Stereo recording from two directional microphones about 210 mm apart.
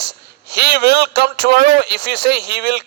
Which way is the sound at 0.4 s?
50° right (ahead or behind).